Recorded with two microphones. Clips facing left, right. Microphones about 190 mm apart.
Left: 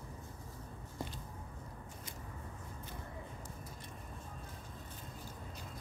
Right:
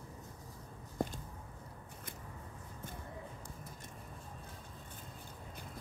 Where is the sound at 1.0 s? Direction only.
50° right (ahead or behind).